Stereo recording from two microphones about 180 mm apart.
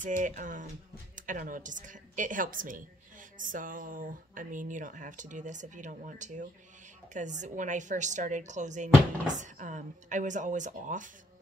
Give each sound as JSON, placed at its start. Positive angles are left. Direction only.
{"t": 0.0, "sound": "speech", "side_deg": -45}